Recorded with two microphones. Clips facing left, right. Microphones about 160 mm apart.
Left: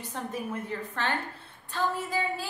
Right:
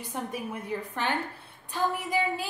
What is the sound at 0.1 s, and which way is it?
A woman's voice, 10° right (ahead or behind).